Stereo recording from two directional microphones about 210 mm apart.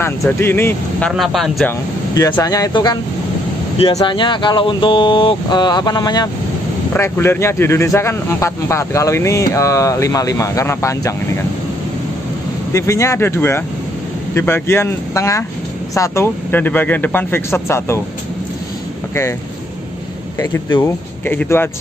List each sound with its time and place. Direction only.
0.4 s speech: 10° left (ahead or behind)
2.1 s speech: 15° left (ahead or behind)
12.7 s speech: 15° left (ahead or behind)
20.3 s speech: 15° left (ahead or behind)